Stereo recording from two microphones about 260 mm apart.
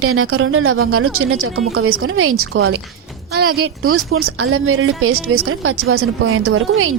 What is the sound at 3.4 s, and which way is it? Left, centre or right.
Speech, right.